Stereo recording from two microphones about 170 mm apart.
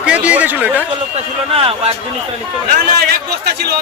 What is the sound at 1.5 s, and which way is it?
Speech, 35° right (ahead or behind).